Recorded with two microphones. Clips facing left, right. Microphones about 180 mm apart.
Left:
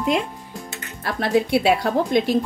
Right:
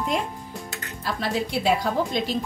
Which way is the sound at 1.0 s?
60° left (ahead or behind).